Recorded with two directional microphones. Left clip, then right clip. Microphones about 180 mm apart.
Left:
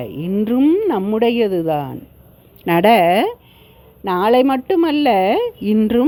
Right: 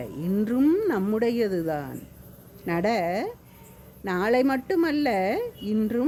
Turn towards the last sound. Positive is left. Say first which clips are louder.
# left 10 dB
turn(degrees=35)  # may be behind; listen again after turning